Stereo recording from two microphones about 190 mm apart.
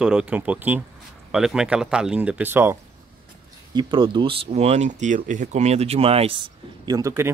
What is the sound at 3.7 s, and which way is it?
Speech, 25° right (ahead or behind).